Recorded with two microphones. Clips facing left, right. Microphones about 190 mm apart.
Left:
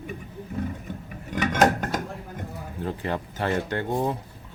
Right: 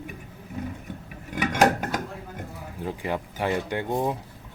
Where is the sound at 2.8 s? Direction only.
10° right (ahead or behind).